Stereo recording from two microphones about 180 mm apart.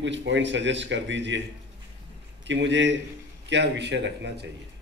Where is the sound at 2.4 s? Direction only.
85° right.